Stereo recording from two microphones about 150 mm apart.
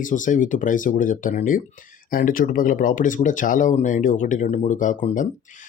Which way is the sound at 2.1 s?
70° left (ahead or behind).